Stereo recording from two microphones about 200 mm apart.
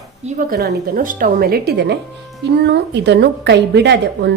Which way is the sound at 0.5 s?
50° right (ahead or behind).